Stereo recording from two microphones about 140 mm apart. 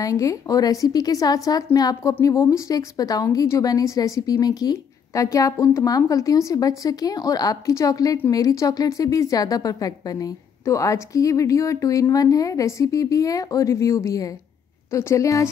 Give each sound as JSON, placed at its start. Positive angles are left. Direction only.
{"t": 0.0, "sound": "a woman's voice", "side_deg": 20}